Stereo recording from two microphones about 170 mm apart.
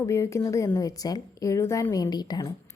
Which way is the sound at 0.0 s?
15° left (ahead or behind).